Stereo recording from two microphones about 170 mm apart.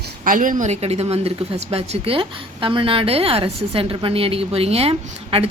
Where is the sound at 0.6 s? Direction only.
40° right (ahead or behind).